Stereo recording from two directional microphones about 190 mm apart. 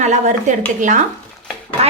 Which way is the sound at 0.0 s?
40° right (ahead or behind).